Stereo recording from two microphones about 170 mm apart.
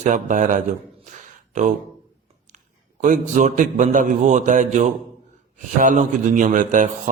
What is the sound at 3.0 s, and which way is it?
Speech, 45° right (ahead or behind).